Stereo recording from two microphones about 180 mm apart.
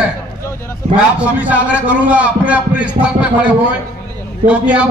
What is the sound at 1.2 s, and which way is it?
A man's voice, 5° right (ahead or behind).